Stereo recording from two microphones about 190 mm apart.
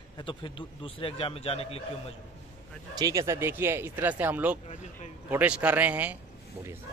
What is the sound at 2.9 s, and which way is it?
Speech, 20° right (ahead or behind).